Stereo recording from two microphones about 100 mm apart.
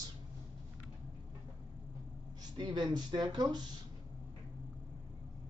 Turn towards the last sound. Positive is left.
turn(degrees=-45)  # may be behind; listen again after turning